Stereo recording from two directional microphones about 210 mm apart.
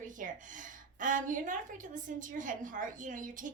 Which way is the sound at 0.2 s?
40° right (ahead or behind).